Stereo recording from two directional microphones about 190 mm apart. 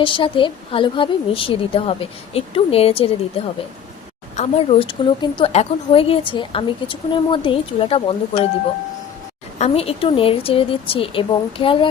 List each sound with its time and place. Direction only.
0.0 s a woman's voice: 25° left (ahead or behind)
9.6 s a woman's voice: 30° left (ahead or behind)